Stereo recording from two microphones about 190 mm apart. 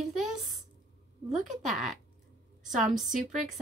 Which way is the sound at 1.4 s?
Centre (ahead or behind).